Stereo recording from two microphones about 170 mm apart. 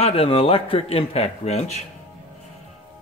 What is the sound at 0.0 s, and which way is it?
A man's voice, 35° left (ahead or behind).